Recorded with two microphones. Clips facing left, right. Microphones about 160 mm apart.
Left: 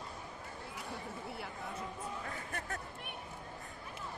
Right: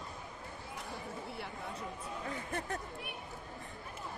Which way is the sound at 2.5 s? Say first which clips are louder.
Right 4 dB; 25° right (ahead or behind).